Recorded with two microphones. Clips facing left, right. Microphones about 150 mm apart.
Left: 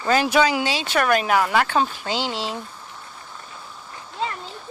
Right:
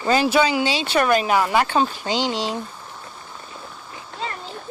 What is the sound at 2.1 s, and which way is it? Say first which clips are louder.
Speech: right 3 dB; 5° left (ahead or behind).